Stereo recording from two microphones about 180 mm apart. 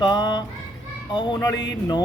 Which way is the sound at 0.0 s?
25° left (ahead or behind).